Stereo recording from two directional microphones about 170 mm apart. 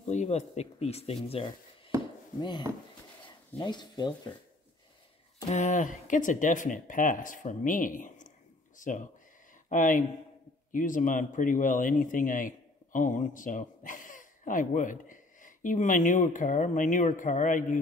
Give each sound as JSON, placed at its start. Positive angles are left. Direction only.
{"t": 0.0, "sound": "speech", "side_deg": 45}
{"t": 3.5, "sound": "speech", "side_deg": 25}
{"t": 5.5, "sound": "speech", "side_deg": 45}